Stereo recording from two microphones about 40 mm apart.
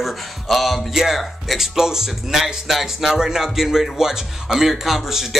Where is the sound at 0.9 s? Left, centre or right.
Centre.